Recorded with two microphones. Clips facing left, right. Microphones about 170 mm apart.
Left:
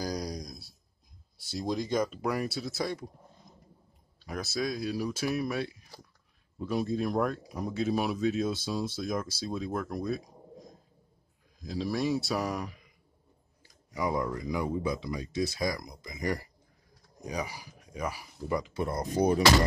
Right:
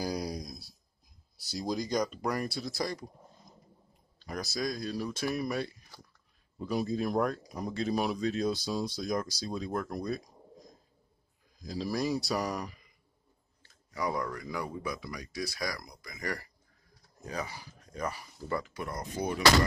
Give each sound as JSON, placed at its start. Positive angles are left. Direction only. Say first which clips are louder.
{"t": 0.0, "sound": "a sound", "louder": "even", "side_deg": -5}
{"t": 1.4, "sound": "speech", "louder": "left 1 dB", "side_deg": 0}
{"t": 13.6, "sound": "speech", "louder": "left 2 dB", "side_deg": 15}
{"t": 18.8, "sound": "speech", "louder": "left 7 dB", "side_deg": 30}